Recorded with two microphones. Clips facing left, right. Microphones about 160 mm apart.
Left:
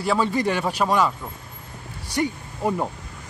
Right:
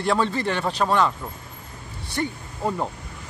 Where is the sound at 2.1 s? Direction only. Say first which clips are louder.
Left 3 dB; 10° left (ahead or behind).